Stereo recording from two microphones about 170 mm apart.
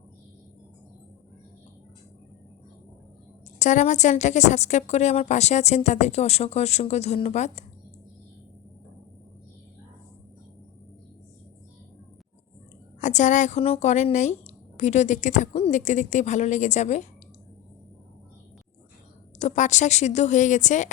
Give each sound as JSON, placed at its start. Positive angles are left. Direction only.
{"t": 3.6, "sound": "a woman's voice", "side_deg": 45}
{"t": 13.0, "sound": "speech", "side_deg": 45}
{"t": 19.4, "sound": "speech", "side_deg": 45}